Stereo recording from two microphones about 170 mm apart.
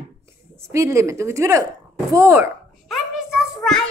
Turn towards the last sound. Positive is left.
turn(degrees=0)  # may be behind; listen again after turning